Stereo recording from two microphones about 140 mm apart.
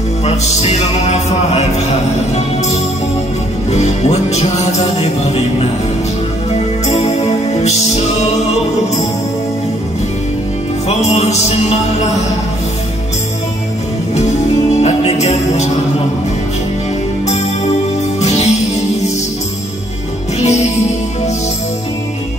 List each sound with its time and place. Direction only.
0.2 s music: 50° left (ahead or behind)
3.7 s music: 50° left (ahead or behind)
6.9 s music: 50° left (ahead or behind)
10.9 s music: 50° left (ahead or behind)
14.8 s music: 50° left (ahead or behind)
18.2 s music: 50° left (ahead or behind)
20.3 s music: 55° left (ahead or behind)